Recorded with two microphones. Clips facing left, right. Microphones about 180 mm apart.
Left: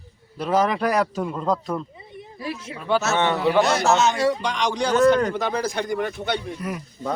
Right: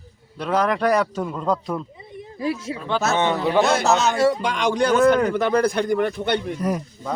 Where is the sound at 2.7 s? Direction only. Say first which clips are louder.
Left 3 dB; 10° left (ahead or behind).